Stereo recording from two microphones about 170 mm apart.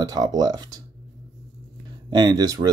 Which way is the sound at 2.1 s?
25° right (ahead or behind).